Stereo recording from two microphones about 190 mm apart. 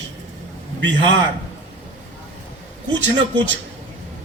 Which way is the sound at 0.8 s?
75° right (ahead or behind).